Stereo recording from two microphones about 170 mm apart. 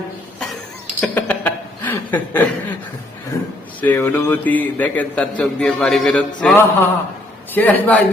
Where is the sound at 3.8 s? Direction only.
10° left (ahead or behind).